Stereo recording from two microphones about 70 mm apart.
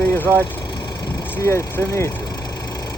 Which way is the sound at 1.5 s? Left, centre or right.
Left.